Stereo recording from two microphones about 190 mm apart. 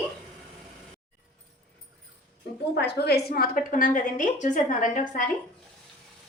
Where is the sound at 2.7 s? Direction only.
60° left (ahead or behind); by 5.3 s 40° left (ahead or behind).